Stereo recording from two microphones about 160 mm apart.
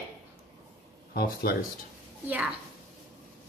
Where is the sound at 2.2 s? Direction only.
10° right (ahead or behind).